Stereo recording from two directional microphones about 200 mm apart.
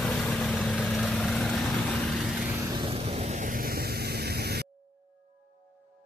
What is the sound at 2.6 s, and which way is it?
Vehicle, 25° right (ahead or behind).